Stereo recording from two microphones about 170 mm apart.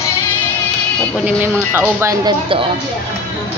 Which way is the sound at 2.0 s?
20° right (ahead or behind).